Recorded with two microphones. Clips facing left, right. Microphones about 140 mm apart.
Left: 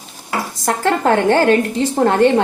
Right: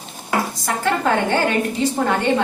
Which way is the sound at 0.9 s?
60° left (ahead or behind).